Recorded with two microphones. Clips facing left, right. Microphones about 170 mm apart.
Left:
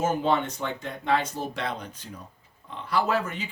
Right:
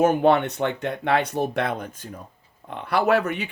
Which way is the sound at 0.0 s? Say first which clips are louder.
Right 7 dB; 60° right (ahead or behind).